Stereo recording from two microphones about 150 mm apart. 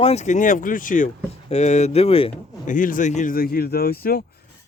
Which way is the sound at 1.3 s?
45° left (ahead or behind).